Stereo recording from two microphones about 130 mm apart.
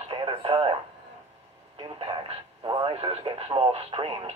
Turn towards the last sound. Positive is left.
turn(degrees=-45)  # may be behind; listen again after turning